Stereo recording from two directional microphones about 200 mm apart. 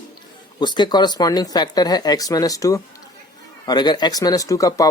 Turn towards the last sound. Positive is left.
turn(degrees=15)  # may be behind; listen again after turning